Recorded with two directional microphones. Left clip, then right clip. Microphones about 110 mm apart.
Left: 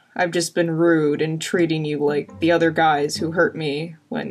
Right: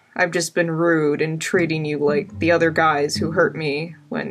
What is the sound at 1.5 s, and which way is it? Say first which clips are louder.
Speech: right 1 dB; 10° right (ahead or behind).